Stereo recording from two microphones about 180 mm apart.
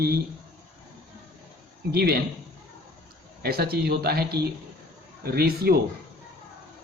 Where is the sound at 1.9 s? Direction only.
60° right (ahead or behind).